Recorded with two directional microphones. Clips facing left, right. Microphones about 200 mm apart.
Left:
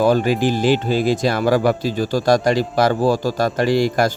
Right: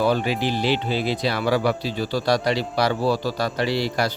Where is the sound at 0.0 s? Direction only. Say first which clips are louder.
Left 5 dB; 45° left (ahead or behind).